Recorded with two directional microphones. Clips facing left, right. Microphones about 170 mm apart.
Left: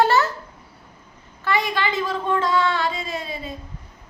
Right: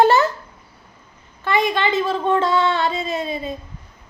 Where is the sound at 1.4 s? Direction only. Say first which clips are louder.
Right 4 dB; 20° right (ahead or behind).